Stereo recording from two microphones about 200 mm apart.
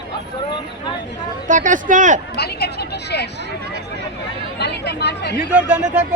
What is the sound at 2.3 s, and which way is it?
Speech, 55° left (ahead or behind).